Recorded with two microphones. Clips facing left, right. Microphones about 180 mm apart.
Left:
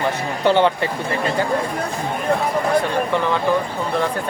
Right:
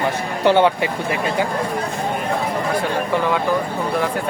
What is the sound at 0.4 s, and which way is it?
Speech, 10° right (ahead or behind).